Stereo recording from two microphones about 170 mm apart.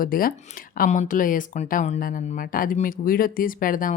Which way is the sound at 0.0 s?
55° left (ahead or behind).